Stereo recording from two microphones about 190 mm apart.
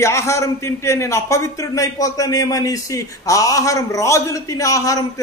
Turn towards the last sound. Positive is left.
turn(degrees=20)  # may be behind; listen again after turning